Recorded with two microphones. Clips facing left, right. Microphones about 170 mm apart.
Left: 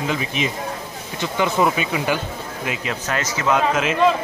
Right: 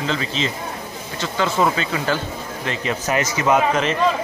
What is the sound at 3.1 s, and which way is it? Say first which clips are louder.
Speech: right 3 dB; 10° right (ahead or behind).